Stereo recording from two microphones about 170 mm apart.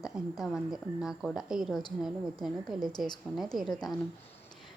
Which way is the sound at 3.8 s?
25° left (ahead or behind).